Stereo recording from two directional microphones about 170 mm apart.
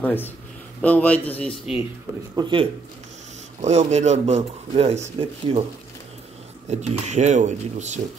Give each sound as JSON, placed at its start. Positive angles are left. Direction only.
{"t": 0.0, "sound": "a man's voice", "side_deg": 10}
{"t": 2.3, "sound": "speech", "side_deg": -30}
{"t": 3.6, "sound": "speech", "side_deg": -40}
{"t": 6.7, "sound": "speech", "side_deg": -40}